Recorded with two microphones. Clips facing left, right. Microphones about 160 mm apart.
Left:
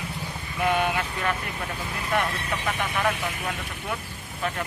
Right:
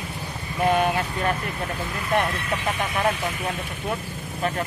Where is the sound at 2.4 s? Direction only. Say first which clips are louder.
Right 2 dB; 40° right (ahead or behind).